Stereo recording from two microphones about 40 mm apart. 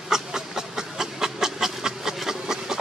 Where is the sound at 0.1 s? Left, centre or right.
Centre.